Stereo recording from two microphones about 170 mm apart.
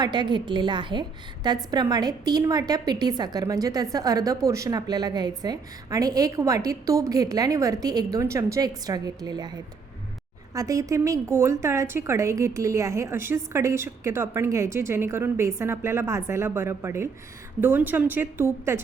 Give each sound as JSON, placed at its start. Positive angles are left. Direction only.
{"t": 0.0, "sound": "a woman's voice", "side_deg": -25}
{"t": 10.5, "sound": "a woman's voice", "side_deg": -20}